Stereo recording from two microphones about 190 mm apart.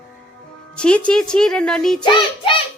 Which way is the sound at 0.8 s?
5° left (ahead or behind).